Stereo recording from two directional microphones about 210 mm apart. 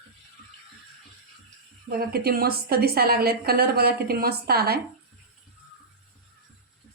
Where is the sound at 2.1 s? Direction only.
45° right (ahead or behind).